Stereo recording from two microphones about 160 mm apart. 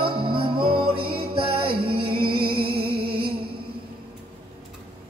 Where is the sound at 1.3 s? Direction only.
35° right (ahead or behind).